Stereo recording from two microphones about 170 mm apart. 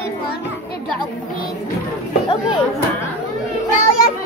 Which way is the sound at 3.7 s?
50° left (ahead or behind).